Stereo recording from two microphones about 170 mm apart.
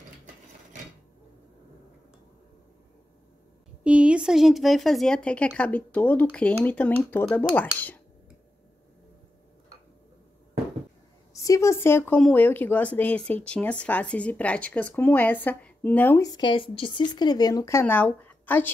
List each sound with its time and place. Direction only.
3.8 s speech: 5° right (ahead or behind); by 7.4 s 10° left (ahead or behind)
11.3 s speech: 20° left (ahead or behind)
16.3 s speech: 25° left (ahead or behind); by 18.7 s 10° left (ahead or behind)